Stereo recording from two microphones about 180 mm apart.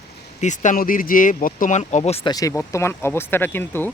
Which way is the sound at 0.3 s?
40° left (ahead or behind).